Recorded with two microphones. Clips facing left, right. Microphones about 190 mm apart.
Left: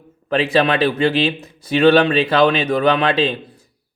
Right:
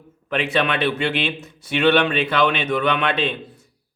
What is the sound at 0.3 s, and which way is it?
Speech, 35° left (ahead or behind).